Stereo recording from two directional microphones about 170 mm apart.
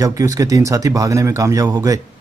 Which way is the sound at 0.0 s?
20° right (ahead or behind).